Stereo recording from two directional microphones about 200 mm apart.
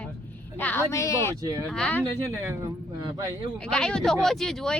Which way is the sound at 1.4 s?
15° right (ahead or behind).